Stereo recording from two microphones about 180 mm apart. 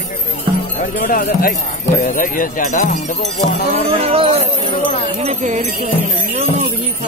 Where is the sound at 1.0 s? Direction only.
50° left (ahead or behind).